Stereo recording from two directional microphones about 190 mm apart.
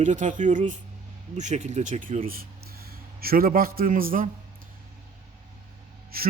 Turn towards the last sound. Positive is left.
turn(degrees=-50)  # may be behind; listen again after turning